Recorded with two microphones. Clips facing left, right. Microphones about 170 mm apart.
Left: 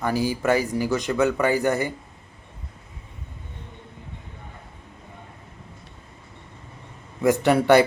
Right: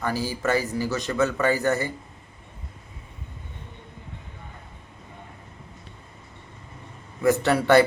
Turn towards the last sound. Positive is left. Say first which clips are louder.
# left 2 dB
turn(degrees=15)  # may be behind; listen again after turning